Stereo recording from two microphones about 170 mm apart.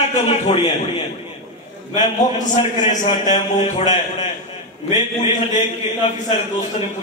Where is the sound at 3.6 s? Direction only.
40° left (ahead or behind).